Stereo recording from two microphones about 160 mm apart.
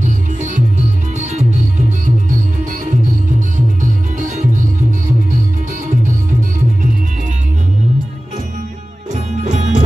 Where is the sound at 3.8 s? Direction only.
55° right (ahead or behind).